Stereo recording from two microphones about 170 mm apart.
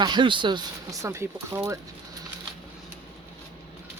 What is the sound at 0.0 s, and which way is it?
Speech, 25° right (ahead or behind).